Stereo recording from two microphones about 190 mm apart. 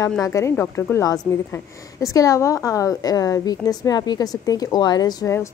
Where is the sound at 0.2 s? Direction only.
15° left (ahead or behind).